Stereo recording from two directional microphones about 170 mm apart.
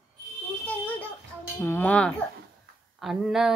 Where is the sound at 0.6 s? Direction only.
10° left (ahead or behind).